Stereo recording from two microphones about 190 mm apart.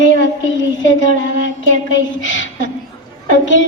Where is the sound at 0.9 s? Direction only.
80° left.